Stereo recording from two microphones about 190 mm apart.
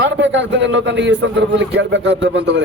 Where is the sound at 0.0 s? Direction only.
75° right (ahead or behind).